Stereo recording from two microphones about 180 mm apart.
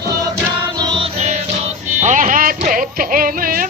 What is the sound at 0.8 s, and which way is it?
Music, 25° right (ahead or behind).